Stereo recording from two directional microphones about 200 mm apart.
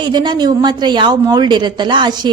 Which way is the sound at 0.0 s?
20° right (ahead or behind).